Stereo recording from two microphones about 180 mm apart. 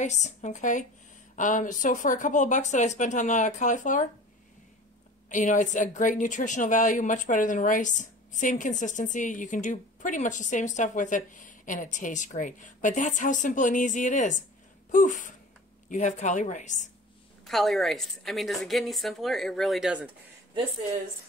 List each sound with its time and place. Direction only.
0.0 s a woman's voice: 40° left (ahead or behind)
5.3 s a woman's voice: 45° left (ahead or behind)
17.5 s a woman's voice: centre (ahead or behind)